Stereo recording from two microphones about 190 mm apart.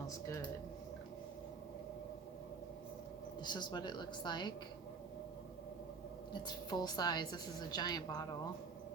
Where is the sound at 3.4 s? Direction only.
20° left (ahead or behind).